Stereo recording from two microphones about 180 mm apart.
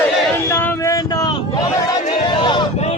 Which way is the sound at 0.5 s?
15° left (ahead or behind).